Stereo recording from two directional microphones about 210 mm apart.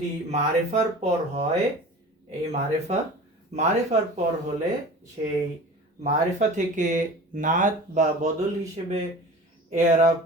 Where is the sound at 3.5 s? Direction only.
35° right (ahead or behind).